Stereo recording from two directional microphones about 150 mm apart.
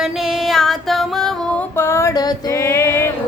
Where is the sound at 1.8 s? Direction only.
20° left (ahead or behind).